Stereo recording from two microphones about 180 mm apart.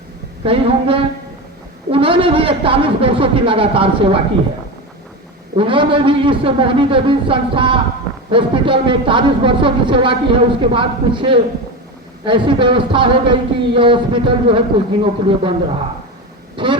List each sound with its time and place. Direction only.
0.4 s a man's voice: 30° right (ahead or behind)
5.5 s a woman's voice: 30° right (ahead or behind)
16.6 s a woman's voice: 25° right (ahead or behind)